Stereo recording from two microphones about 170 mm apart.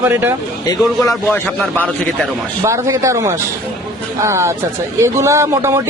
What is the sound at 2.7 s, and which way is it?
Speech, 15° right (ahead or behind).